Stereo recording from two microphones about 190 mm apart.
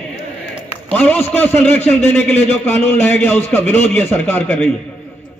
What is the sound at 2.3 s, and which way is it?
Speech, 35° left (ahead or behind).